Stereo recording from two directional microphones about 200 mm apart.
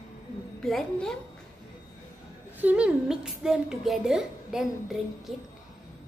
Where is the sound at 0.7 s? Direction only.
Centre (ahead or behind).